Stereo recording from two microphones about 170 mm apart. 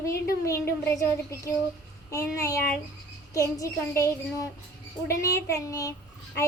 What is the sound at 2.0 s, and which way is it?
A woman's voice, 20° left (ahead or behind).